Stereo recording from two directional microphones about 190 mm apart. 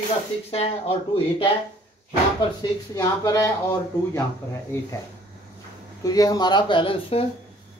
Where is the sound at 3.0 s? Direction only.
20° left (ahead or behind).